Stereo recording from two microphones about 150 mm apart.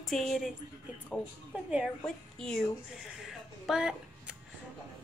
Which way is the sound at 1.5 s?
10° right (ahead or behind).